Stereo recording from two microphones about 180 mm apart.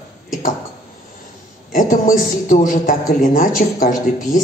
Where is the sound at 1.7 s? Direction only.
50° left (ahead or behind).